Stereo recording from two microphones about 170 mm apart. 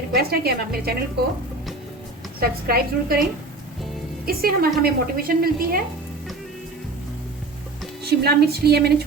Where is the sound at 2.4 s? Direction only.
65° right (ahead or behind).